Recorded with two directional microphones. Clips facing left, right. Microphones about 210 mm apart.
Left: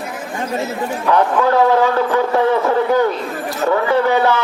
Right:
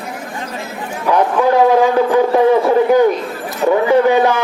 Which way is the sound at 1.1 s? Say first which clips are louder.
Right 2 dB; 15° right (ahead or behind).